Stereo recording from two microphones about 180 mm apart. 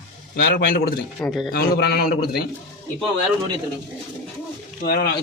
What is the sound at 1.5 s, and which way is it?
Speech, 60° left (ahead or behind).